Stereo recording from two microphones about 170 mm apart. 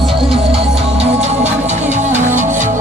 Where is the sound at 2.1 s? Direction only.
45° right (ahead or behind).